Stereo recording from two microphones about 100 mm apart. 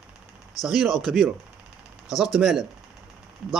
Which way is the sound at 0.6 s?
Centre (ahead or behind).